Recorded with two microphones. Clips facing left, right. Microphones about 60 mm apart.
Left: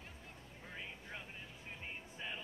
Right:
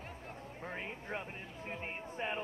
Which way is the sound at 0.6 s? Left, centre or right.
Right.